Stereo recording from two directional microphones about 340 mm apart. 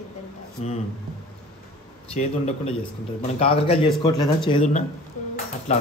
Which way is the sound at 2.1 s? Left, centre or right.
Centre.